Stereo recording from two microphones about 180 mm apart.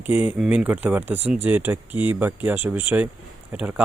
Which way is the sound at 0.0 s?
10° right (ahead or behind).